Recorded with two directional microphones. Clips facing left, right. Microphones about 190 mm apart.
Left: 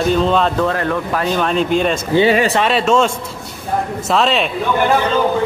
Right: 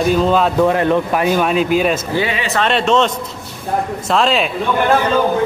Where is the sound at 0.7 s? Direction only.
20° right (ahead or behind).